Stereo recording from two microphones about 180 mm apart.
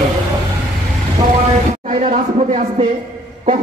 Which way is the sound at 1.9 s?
45° right (ahead or behind).